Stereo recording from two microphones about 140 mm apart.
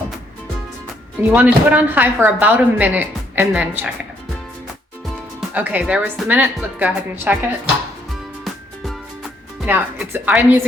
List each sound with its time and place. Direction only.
1.3 s speech: 10° right (ahead or behind)
5.4 s speech: 10° right (ahead or behind)
8.4 s music: centre (ahead or behind)
9.6 s speech: 15° right (ahead or behind)